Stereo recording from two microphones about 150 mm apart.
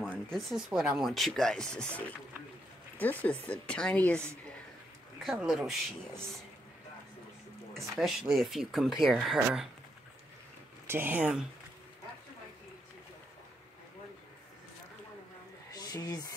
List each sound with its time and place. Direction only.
0.1 s speech: centre (ahead or behind)
5.2 s speech: 5° right (ahead or behind)
7.9 s speech: centre (ahead or behind)
10.9 s speech: 15° right (ahead or behind)
15.7 s a sound: 25° left (ahead or behind)